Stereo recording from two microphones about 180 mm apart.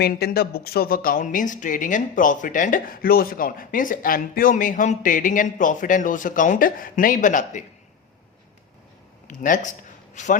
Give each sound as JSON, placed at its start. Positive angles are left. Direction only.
{"t": 0.0, "sound": "speech", "side_deg": 55}
{"t": 9.2, "sound": "a man's voice", "side_deg": 45}